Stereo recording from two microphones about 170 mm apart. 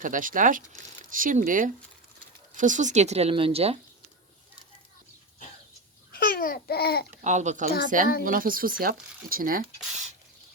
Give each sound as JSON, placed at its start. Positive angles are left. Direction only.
{"t": 0.0, "sound": "speech", "side_deg": -50}
{"t": 6.1, "sound": "babbling", "side_deg": 60}
{"t": 7.2, "sound": "speech", "side_deg": -45}